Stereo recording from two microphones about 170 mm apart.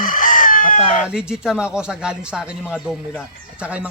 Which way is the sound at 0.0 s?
50° left (ahead or behind).